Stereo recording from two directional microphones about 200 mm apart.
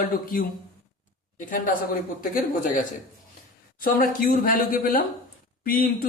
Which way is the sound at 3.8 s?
45° left (ahead or behind).